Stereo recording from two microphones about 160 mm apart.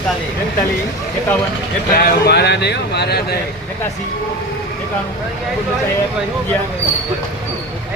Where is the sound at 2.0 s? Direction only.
80° left.